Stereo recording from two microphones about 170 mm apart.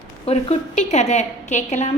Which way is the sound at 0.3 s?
40° left (ahead or behind).